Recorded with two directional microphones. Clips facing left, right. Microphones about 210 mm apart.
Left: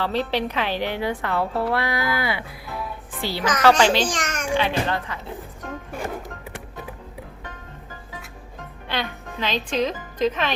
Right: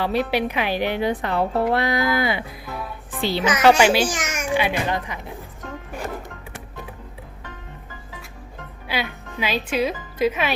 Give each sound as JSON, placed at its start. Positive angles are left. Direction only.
{"t": 0.0, "sound": "a woman's voice", "side_deg": -10}
{"t": 8.9, "sound": "a woman's voice", "side_deg": -10}